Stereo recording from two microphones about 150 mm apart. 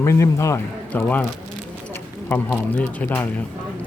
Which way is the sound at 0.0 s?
15° left (ahead or behind).